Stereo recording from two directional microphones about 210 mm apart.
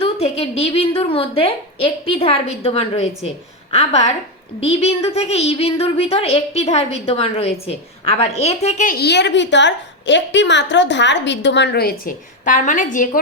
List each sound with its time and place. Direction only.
0.0 s a woman's voice: 30° left (ahead or behind)